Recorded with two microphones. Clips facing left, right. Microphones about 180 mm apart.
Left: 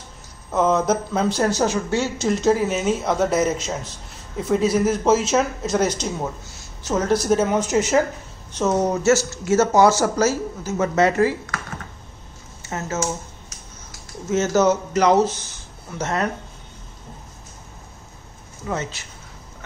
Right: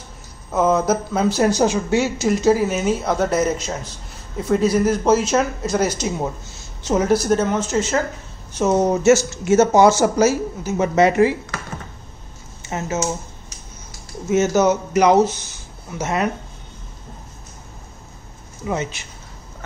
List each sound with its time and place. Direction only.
0.5 s speech: 5° right (ahead or behind)
7.1 s speech: centre (ahead or behind)
8.5 s speech: 15° right (ahead or behind)
12.6 s speech: 15° right (ahead or behind)
14.3 s speech: 10° right (ahead or behind)
18.7 s speech: 15° right (ahead or behind)